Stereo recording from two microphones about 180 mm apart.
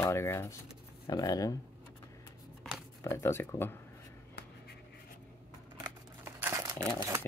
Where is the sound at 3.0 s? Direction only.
15° left (ahead or behind).